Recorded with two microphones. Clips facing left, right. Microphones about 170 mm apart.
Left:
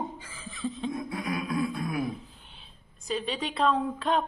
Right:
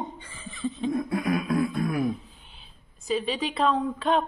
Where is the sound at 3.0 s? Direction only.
Centre (ahead or behind).